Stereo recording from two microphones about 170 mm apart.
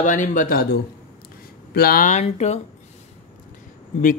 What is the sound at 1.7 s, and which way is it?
Speech, 65° left (ahead or behind).